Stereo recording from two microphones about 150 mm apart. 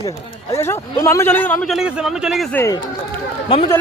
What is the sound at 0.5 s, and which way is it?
Speech, 15° left (ahead or behind).